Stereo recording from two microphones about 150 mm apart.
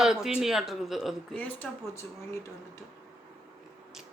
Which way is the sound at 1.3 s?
10° left (ahead or behind).